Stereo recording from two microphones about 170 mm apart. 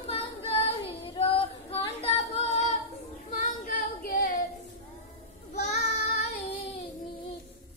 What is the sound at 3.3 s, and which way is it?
Singing, 55° left (ahead or behind).